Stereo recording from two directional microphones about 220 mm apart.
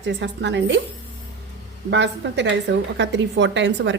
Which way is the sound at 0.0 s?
55° right (ahead or behind).